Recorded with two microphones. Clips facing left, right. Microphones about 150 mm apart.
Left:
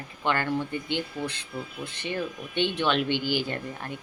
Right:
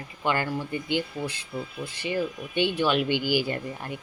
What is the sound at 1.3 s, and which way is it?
Speech, 60° left (ahead or behind).